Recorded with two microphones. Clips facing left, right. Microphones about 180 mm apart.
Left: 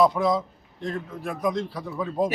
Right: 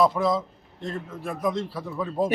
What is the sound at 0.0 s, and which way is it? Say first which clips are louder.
A man's voice: left 1 dB; centre (ahead or behind).